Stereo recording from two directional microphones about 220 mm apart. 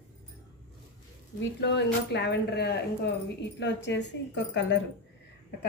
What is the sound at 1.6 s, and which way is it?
Speech, 50° left (ahead or behind).